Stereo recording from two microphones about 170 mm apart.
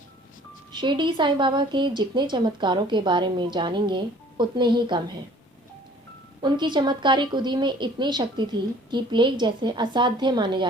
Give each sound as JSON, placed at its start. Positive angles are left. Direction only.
{"t": 0.7, "sound": "a woman's voice", "side_deg": -30}
{"t": 6.4, "sound": "a woman's voice", "side_deg": -25}